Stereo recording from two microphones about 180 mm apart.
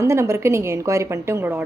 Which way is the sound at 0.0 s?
15° right (ahead or behind).